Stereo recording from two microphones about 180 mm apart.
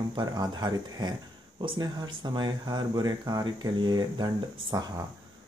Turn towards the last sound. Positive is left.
turn(degrees=-20)  # may be behind; listen again after turning